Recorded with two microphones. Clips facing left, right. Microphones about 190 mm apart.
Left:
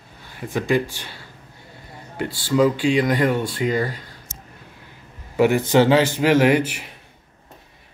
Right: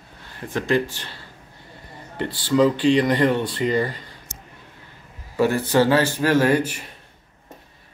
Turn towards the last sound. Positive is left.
turn(degrees=15)  # may be behind; listen again after turning